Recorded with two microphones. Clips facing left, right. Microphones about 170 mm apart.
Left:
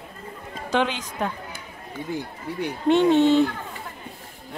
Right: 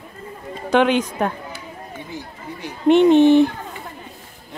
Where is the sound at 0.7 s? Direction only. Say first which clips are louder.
Right 8 dB; 60° right (ahead or behind).